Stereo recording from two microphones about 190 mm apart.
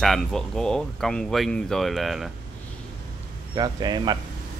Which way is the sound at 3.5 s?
20° right (ahead or behind).